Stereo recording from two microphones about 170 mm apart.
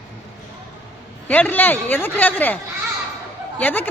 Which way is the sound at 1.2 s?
10° left (ahead or behind).